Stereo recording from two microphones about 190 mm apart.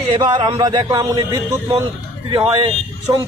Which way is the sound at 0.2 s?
25° right (ahead or behind).